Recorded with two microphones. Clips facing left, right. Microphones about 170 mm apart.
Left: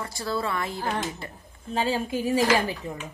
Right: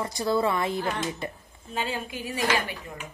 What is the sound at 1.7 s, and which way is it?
Speech, 35° left (ahead or behind).